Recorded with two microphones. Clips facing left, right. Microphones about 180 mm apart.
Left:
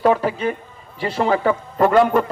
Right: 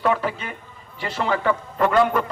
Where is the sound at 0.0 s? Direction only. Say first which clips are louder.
Left 5 dB; 40° left (ahead or behind).